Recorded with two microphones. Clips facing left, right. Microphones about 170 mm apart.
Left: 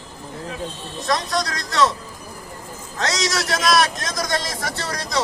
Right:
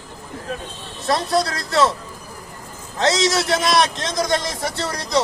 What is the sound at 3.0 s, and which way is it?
Speech, 25° right (ahead or behind).